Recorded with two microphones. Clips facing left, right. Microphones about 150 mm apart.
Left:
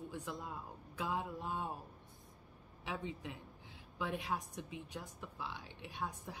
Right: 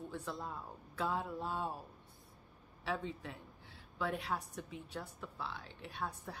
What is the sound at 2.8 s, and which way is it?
Speech, 15° left (ahead or behind).